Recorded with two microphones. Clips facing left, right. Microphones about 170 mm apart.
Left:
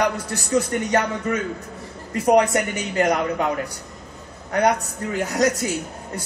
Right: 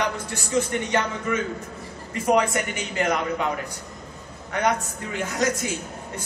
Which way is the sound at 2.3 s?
35° left (ahead or behind).